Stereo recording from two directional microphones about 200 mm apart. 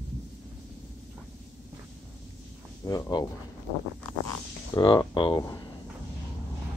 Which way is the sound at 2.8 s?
20° left (ahead or behind).